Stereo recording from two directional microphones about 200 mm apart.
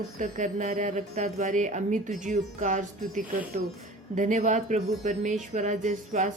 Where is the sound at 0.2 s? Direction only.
40° right (ahead or behind).